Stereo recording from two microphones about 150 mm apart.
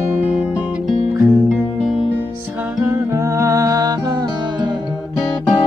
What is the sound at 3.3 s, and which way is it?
Music, 20° right (ahead or behind).